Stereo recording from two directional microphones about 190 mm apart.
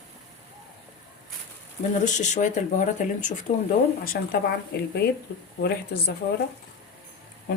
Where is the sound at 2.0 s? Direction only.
40° left (ahead or behind).